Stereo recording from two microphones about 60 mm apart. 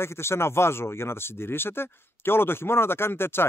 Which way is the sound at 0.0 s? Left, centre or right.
Left.